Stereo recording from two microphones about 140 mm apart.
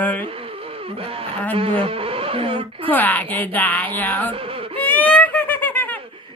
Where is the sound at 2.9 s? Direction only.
10° left (ahead or behind).